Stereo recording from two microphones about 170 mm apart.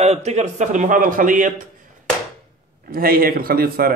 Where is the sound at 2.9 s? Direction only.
60° right (ahead or behind).